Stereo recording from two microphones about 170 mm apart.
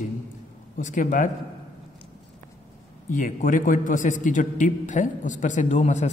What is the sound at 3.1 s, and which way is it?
A man's voice, 50° left (ahead or behind).